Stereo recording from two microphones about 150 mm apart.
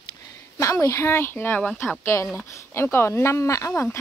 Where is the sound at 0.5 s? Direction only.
20° left (ahead or behind).